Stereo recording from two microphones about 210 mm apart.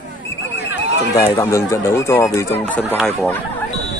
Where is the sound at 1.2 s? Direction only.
10° left (ahead or behind).